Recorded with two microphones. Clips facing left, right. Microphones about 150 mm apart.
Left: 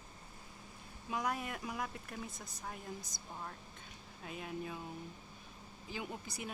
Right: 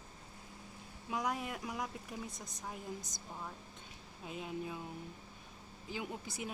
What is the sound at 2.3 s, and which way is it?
Speech, 15° right (ahead or behind).